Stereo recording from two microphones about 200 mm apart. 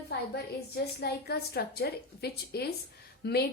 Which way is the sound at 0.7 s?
50° left (ahead or behind).